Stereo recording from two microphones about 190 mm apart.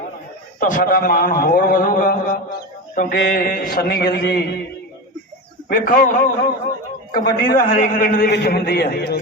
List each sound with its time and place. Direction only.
0.6 s a man's voice: 45° left (ahead or behind)
5.6 s a man's voice: 45° left (ahead or behind)